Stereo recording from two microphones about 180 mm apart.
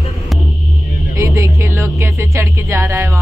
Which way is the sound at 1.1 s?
15° right (ahead or behind).